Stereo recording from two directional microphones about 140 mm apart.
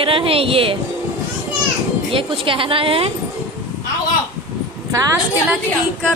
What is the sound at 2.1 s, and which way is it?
A woman's voice, 40° right (ahead or behind).